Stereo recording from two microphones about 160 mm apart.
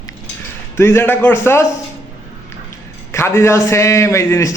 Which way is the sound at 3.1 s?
15° left (ahead or behind).